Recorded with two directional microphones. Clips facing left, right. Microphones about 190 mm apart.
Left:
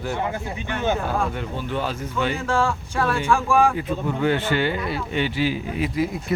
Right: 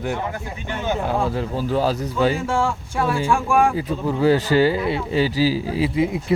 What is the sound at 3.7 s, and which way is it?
Speech, 35° right (ahead or behind).